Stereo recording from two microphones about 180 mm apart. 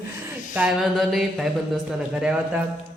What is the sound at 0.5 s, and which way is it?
A man's voice, 5° right (ahead or behind).